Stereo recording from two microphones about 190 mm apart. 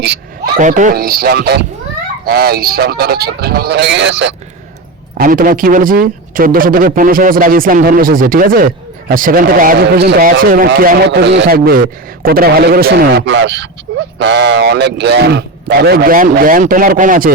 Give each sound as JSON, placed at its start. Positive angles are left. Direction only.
{"t": 0.6, "sound": "a man's voice", "side_deg": -40}
{"t": 5.1, "sound": "a man's voice", "side_deg": -50}